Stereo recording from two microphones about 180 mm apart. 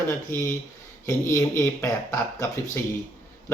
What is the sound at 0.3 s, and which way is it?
Speech, 15° left (ahead or behind).